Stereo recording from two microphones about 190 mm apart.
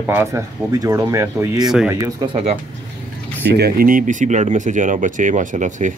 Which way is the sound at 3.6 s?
50° right (ahead or behind).